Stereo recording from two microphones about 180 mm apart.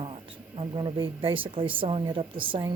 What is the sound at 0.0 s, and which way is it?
A woman's voice, 30° right (ahead or behind).